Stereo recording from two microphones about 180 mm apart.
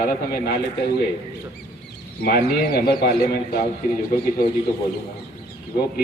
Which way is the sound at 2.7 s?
60° left (ahead or behind).